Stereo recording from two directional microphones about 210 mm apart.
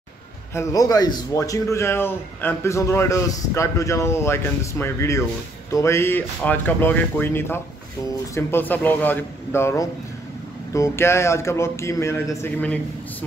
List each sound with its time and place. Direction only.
0.6 s a man's voice: 15° left (ahead or behind)